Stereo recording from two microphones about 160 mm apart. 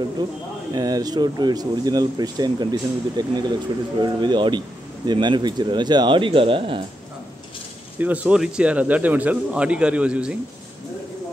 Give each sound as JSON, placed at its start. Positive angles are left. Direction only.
{"t": 0.2, "sound": "speech", "side_deg": -25}
{"t": 8.0, "sound": "a man's voice", "side_deg": -10}